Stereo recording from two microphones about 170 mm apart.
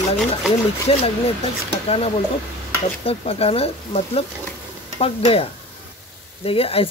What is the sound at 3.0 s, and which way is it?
Speech, 35° left (ahead or behind).